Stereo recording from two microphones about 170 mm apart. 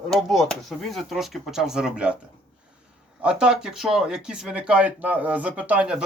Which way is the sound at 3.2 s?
5° right (ahead or behind).